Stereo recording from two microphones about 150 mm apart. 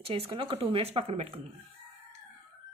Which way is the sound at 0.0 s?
35° right (ahead or behind).